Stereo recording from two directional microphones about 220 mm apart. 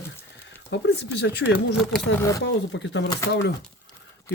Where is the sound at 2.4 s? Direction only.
55° left (ahead or behind).